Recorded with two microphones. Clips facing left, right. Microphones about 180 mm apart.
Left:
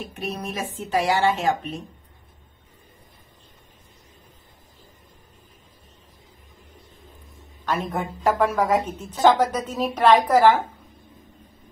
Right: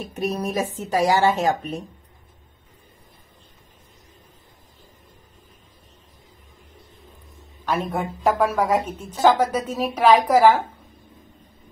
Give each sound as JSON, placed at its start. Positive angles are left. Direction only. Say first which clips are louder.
{"t": 0.1, "sound": "a woman's voice", "louder": "right 10 dB", "side_deg": -40}
{"t": 7.6, "sound": "a woman's voice", "louder": "right 2 dB", "side_deg": -10}